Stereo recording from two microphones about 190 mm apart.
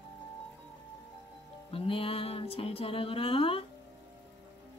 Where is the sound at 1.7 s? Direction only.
30° left (ahead or behind).